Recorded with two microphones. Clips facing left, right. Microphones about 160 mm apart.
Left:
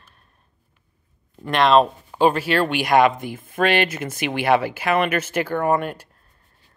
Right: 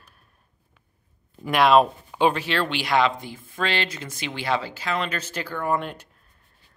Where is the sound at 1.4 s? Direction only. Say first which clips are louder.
Left 1 dB; 5° right (ahead or behind).